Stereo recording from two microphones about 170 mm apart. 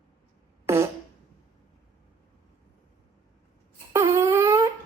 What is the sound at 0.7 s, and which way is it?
Fart, 15° right (ahead or behind).